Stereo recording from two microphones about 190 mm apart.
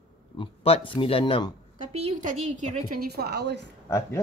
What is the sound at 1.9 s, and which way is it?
A woman's voice, 35° right (ahead or behind).